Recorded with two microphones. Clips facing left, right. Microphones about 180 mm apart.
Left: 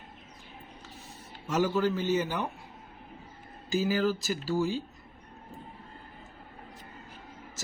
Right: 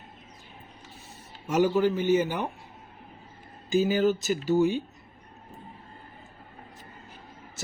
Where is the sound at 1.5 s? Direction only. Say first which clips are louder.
Right 4 dB; 15° right (ahead or behind).